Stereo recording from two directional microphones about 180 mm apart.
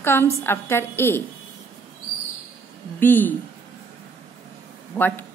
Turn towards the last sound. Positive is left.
turn(degrees=10)  # may be behind; listen again after turning